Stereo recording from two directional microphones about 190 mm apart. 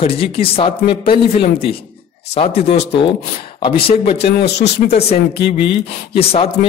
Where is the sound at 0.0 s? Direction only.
30° left (ahead or behind).